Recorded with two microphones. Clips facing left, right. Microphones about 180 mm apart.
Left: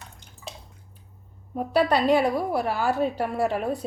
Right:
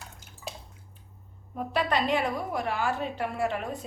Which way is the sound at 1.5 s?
35° left (ahead or behind).